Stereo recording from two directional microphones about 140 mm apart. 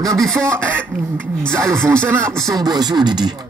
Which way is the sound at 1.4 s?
5° left (ahead or behind).